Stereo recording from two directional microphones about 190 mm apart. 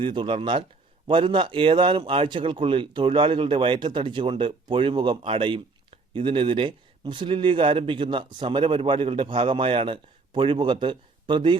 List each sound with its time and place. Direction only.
0.0 s speech: 25° right (ahead or behind)